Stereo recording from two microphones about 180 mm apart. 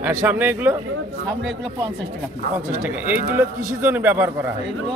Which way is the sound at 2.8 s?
10° right (ahead or behind).